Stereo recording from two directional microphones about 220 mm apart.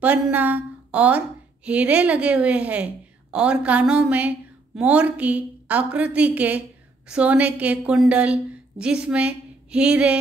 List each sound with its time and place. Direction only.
0.0 s a woman's voice: 5° right (ahead or behind)